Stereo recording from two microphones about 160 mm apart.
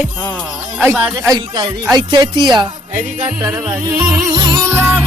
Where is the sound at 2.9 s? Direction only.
55° right (ahead or behind).